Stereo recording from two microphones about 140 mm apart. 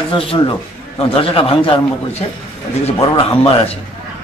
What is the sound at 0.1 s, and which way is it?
Speech, 40° left (ahead or behind).